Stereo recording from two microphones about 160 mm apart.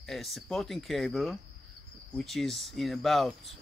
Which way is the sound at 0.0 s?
Centre (ahead or behind).